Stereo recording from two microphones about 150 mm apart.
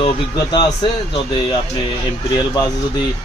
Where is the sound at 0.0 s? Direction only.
30° left (ahead or behind).